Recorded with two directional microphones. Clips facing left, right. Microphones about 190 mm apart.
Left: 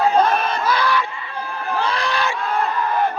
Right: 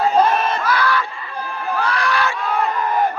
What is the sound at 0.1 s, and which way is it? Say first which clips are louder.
Crowd: right 1 dB; centre (ahead or behind).